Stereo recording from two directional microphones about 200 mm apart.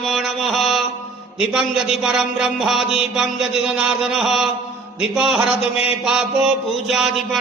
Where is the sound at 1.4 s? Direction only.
Centre (ahead or behind).